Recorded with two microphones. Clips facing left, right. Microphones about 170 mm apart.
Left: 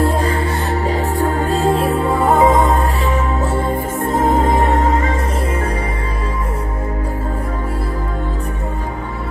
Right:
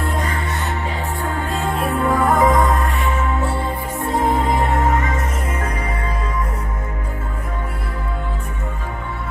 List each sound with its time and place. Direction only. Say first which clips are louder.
0.0 s music: left 7 dB; 30° left (ahead or behind)